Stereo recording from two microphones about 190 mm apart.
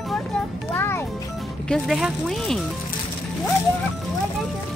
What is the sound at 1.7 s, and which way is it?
Speech, centre (ahead or behind).